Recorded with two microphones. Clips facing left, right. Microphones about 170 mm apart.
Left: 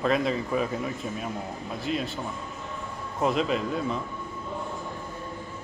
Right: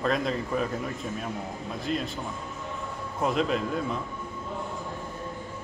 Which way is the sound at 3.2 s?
Centre (ahead or behind).